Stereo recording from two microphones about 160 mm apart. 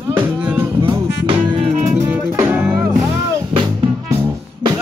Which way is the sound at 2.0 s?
15° right (ahead or behind).